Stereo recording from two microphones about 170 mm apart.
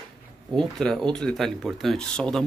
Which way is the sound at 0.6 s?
5° left (ahead or behind).